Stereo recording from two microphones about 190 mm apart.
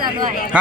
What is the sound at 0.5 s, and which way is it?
Speech, 5° right (ahead or behind).